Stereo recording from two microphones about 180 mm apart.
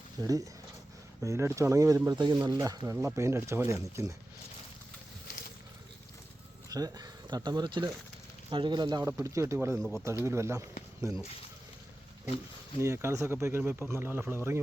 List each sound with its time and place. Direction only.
0.2 s speech: 20° right (ahead or behind)
6.7 s speech: 20° right (ahead or behind)
12.8 s speech: 15° right (ahead or behind)